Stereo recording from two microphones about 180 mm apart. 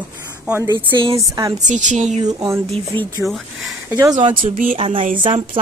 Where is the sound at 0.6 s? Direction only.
30° right (ahead or behind).